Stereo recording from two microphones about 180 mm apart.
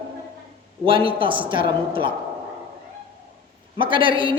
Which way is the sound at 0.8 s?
30° right (ahead or behind).